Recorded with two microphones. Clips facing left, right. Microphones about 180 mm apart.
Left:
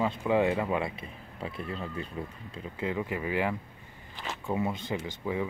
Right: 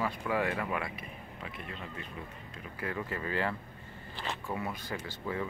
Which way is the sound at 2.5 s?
20° left (ahead or behind).